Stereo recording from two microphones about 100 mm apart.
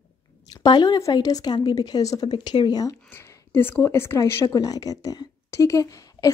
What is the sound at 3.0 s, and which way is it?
A woman's voice, 25° left (ahead or behind).